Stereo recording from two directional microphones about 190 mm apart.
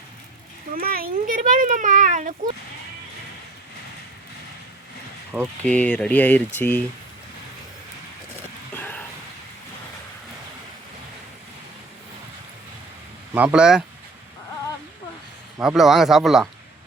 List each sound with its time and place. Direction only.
0.7 s speech: 50° right (ahead or behind)
5.6 s speech: 5° left (ahead or behind)
8.7 s a sound: 10° left (ahead or behind)
13.3 s speech: 5° right (ahead or behind)
15.5 s speech: centre (ahead or behind)